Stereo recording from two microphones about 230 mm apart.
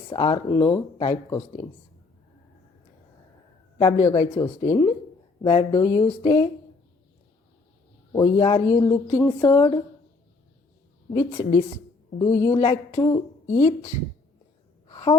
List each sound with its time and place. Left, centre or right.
0.1 s speech: centre
3.8 s a woman's voice: centre
8.1 s a woman's voice: centre
11.1 s a woman's voice: left
14.8 s sigh: left